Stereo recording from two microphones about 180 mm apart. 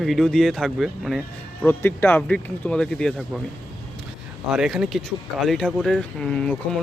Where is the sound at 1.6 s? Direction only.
10° left (ahead or behind).